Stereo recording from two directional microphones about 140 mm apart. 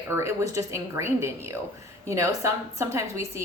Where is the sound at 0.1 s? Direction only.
20° right (ahead or behind).